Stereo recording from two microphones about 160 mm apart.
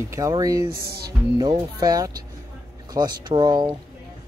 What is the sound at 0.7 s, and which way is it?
Music, 75° right (ahead or behind).